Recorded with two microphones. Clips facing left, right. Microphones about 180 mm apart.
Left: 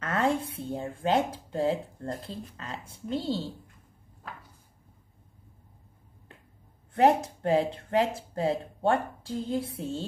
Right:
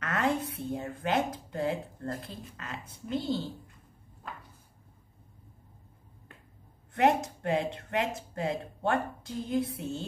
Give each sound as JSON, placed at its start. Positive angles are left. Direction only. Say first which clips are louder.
{"t": 0.0, "sound": "speech", "louder": "left 2 dB", "side_deg": 30}
{"t": 6.9, "sound": "speech", "louder": "left 3 dB", "side_deg": 30}